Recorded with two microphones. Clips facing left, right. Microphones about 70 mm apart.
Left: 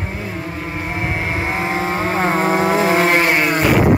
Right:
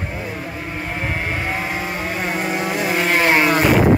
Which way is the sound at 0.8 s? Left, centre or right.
Centre.